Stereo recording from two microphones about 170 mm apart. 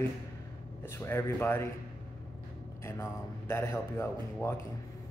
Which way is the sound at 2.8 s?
15° left (ahead or behind).